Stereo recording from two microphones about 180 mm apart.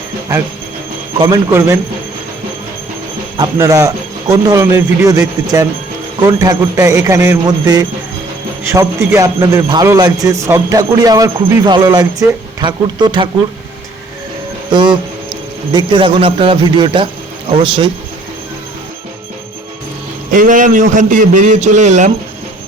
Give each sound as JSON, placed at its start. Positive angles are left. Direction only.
{"t": 1.2, "sound": "speech", "side_deg": -20}
{"t": 3.3, "sound": "a man's voice", "side_deg": -20}
{"t": 6.2, "sound": "a man's voice", "side_deg": -20}
{"t": 14.7, "sound": "a man's voice", "side_deg": -25}
{"t": 20.3, "sound": "a man's voice", "side_deg": -45}